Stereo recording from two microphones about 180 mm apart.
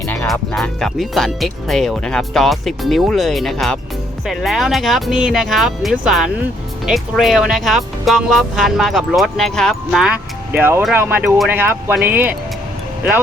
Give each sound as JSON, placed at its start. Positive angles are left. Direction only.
{"t": 0.3, "sound": "speech", "side_deg": 0}